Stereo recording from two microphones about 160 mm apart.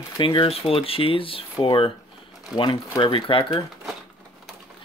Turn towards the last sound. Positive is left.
turn(degrees=35)  # may be behind; listen again after turning